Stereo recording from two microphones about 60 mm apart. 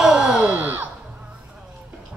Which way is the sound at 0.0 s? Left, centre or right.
Centre.